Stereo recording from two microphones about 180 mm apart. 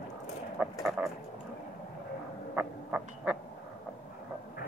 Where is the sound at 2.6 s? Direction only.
10° right (ahead or behind).